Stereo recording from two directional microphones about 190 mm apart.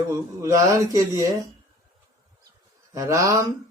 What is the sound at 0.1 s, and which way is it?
Speech, 15° right (ahead or behind).